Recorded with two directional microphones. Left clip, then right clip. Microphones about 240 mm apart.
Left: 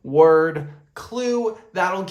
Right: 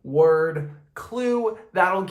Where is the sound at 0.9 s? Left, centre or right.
Centre.